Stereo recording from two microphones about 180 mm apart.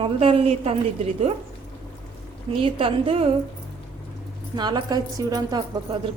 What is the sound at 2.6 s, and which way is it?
Speech, 30° right (ahead or behind).